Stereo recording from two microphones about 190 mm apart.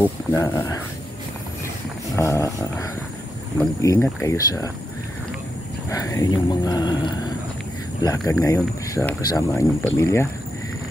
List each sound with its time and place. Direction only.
0.0 s speech: 15° left (ahead or behind)
2.1 s speech: 15° left (ahead or behind)
5.9 s speech: 15° left (ahead or behind)
8.3 s speech: 15° left (ahead or behind)